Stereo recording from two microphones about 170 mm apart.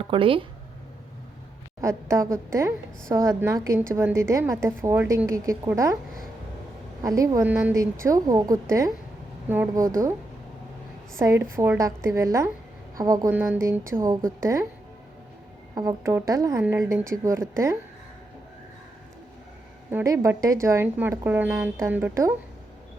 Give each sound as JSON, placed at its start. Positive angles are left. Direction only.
{"t": 0.0, "sound": "speech", "side_deg": -30}
{"t": 1.8, "sound": "a woman's voice", "side_deg": -15}
{"t": 7.0, "sound": "a woman's voice", "side_deg": -20}
{"t": 7.5, "sound": "a woman's voice", "side_deg": -10}
{"t": 8.0, "sound": "a woman's voice", "side_deg": -20}
{"t": 11.2, "sound": "a woman's voice", "side_deg": -15}
{"t": 15.7, "sound": "a woman's voice", "side_deg": -20}
{"t": 19.9, "sound": "a woman's voice", "side_deg": -15}